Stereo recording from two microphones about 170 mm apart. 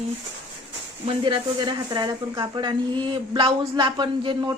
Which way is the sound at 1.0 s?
30° right (ahead or behind).